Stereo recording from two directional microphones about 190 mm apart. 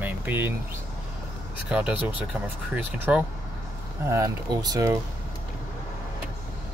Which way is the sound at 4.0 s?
15° right (ahead or behind).